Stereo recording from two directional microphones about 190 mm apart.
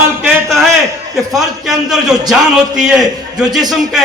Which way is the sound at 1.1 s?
Centre (ahead or behind).